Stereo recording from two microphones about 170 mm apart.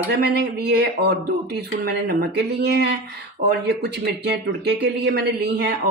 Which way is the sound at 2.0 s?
65° right (ahead or behind).